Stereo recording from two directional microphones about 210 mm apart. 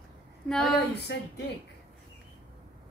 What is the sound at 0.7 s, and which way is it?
Speech, 50° left (ahead or behind).